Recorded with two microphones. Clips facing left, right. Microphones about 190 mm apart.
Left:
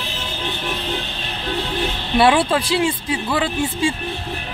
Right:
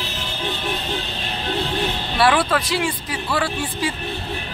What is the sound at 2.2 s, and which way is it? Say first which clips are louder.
Speech: left 3 dB; 25° left (ahead or behind).